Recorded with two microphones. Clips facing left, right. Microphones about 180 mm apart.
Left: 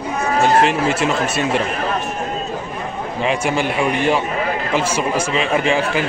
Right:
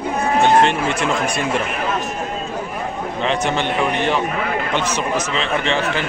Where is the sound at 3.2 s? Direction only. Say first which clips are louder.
Left 1 dB; 10° left (ahead or behind).